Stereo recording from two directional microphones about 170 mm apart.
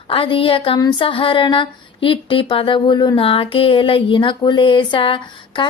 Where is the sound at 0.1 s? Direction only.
30° left (ahead or behind).